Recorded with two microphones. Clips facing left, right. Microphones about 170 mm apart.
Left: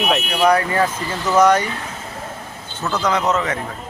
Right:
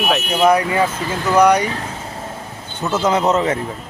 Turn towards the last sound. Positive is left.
turn(degrees=-30)  # may be behind; listen again after turning